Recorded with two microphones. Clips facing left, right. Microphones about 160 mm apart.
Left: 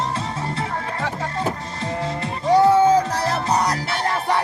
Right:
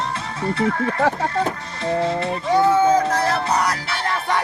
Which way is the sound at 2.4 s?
35° left (ahead or behind).